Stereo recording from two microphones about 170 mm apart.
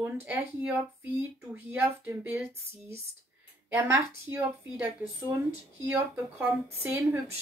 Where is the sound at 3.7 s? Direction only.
10° right (ahead or behind).